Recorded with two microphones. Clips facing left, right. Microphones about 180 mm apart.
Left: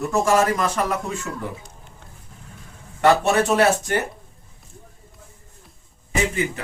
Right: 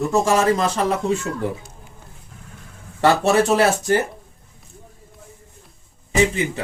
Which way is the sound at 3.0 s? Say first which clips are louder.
Right 1 dB; 35° right (ahead or behind).